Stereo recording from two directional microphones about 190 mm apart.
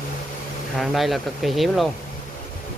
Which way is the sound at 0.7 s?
Centre (ahead or behind).